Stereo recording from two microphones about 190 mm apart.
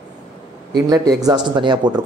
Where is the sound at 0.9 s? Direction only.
20° right (ahead or behind).